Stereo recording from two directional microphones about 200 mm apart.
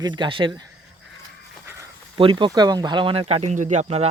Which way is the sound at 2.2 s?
25° right (ahead or behind).